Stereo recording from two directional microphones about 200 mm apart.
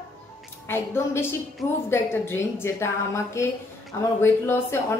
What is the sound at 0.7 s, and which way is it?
A woman's voice, 10° left (ahead or behind).